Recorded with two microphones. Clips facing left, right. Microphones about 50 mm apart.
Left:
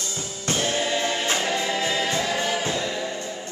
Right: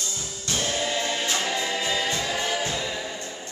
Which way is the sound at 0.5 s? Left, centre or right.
Left.